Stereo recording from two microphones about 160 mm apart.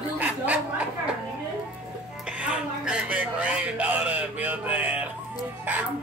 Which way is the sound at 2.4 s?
5° right (ahead or behind).